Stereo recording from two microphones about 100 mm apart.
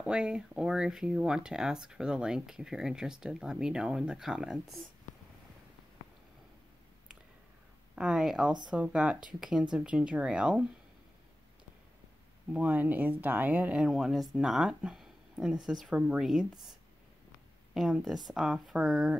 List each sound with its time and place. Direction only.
0.0 s speech: 10° right (ahead or behind)
7.9 s speech: 5° right (ahead or behind)
12.5 s speech: 15° right (ahead or behind)
17.7 s speech: centre (ahead or behind)